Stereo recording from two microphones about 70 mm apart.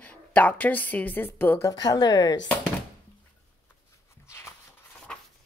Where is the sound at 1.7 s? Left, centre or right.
Left.